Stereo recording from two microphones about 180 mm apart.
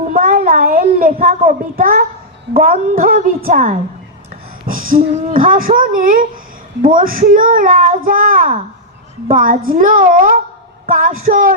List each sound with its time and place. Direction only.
0.1 s child singing: 55° right (ahead or behind)
2.6 s a child's voice: 55° right (ahead or behind)
4.6 s a sound: 50° right (ahead or behind)
5.3 s a child's voice: 50° right (ahead or behind)